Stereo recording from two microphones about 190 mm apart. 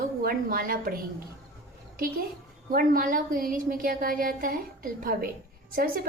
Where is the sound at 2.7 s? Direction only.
50° right (ahead or behind).